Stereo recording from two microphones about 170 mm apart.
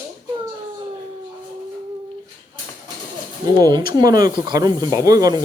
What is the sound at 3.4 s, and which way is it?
Speech, 25° right (ahead or behind).